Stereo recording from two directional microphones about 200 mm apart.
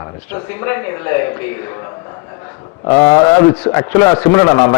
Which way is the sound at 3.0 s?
15° left (ahead or behind).